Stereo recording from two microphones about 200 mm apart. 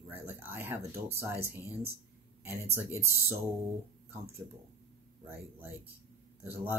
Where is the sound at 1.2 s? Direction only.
15° right (ahead or behind).